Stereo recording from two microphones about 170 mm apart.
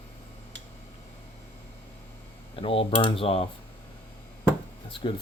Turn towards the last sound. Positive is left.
turn(degrees=30)  # may be behind; listen again after turning